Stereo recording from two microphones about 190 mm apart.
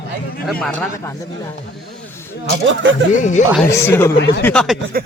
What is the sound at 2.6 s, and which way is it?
Speech, 90° right.